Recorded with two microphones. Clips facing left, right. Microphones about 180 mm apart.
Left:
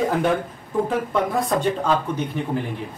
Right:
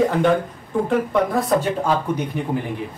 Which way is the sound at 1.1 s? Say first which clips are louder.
Right 3 dB; centre (ahead or behind).